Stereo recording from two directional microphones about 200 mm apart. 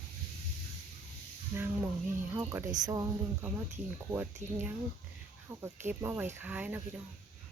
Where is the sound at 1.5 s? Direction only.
10° right (ahead or behind).